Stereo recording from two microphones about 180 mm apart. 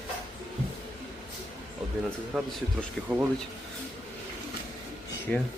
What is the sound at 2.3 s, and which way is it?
Speech, centre (ahead or behind).